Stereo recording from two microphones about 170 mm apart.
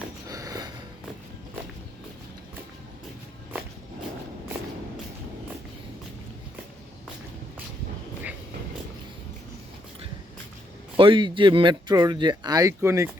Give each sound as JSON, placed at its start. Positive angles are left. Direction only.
{"t": 0.3, "sound": "sniff", "side_deg": -20}
{"t": 10.9, "sound": "speech", "side_deg": -30}